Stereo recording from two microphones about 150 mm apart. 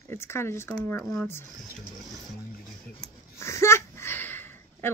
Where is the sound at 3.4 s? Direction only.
20° left (ahead or behind).